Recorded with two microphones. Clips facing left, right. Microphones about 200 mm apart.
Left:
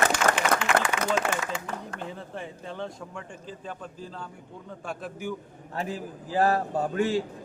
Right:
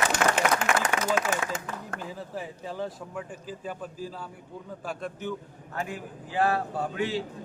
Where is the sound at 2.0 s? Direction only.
5° right (ahead or behind).